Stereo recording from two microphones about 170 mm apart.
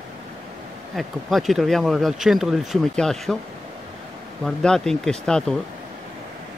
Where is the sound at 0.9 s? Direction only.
Centre (ahead or behind).